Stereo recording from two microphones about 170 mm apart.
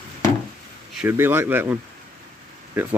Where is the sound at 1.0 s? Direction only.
10° right (ahead or behind).